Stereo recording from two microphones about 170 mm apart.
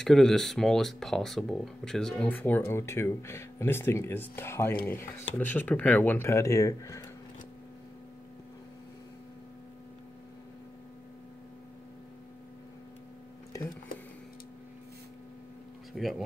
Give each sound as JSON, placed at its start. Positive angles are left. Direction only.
{"t": 0.0, "sound": "speech", "side_deg": 0}
{"t": 15.9, "sound": "speech", "side_deg": 0}